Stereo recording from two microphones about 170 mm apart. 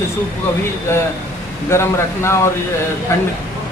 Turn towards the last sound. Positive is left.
turn(degrees=15)  # may be behind; listen again after turning